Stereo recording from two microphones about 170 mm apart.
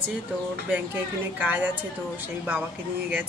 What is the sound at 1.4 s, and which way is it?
Speech, 10° right (ahead or behind).